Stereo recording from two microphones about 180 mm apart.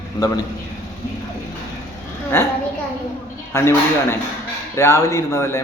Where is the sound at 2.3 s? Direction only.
15° left (ahead or behind).